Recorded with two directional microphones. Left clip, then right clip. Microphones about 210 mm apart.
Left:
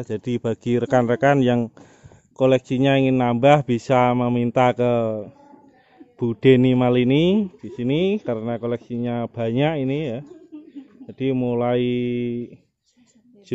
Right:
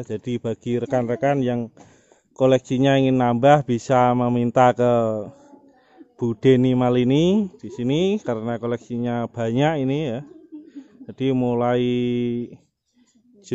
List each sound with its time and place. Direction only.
0.0 s speech: 5° left (ahead or behind)
2.3 s speech: 5° right (ahead or behind)
10.5 s a sound: 15° left (ahead or behind)
11.1 s speech: 10° right (ahead or behind)